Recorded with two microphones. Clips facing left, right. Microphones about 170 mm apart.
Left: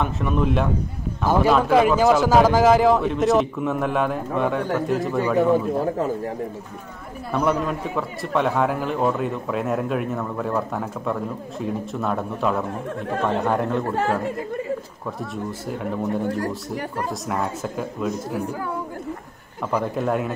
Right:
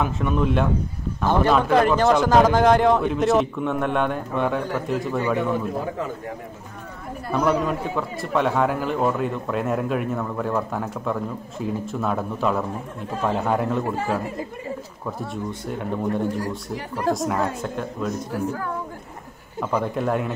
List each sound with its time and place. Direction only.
0.0 s a man's voice: centre (ahead or behind)
5.9 s speech: 35° left (ahead or behind)
7.2 s a man's voice: centre (ahead or behind)
15.7 s a man's voice: centre (ahead or behind)
19.6 s a man's voice: centre (ahead or behind)